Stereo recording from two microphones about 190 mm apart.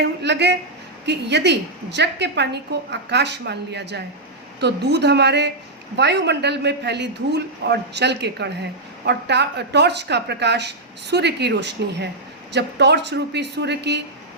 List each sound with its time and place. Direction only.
0.0 s a woman's voice: 65° right (ahead or behind)